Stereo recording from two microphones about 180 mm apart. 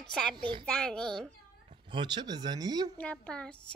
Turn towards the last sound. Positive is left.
turn(degrees=5)  # may be behind; listen again after turning